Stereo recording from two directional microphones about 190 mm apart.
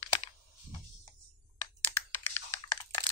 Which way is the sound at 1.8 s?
15° left (ahead or behind).